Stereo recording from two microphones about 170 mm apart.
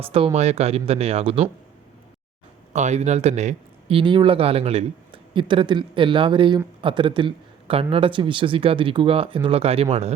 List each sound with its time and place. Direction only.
0.0 s speech: 35° right (ahead or behind)
2.7 s speech: 40° right (ahead or behind)